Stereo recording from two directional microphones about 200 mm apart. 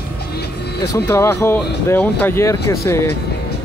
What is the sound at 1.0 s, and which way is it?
Speech, 15° left (ahead or behind).